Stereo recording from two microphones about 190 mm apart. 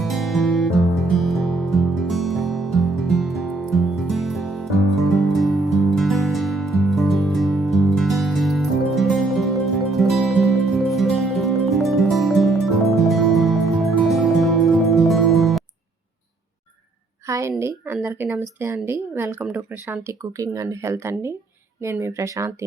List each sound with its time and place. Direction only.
0.0 s music: centre (ahead or behind)
17.2 s a sound: 15° right (ahead or behind)
17.6 s speech: 10° right (ahead or behind)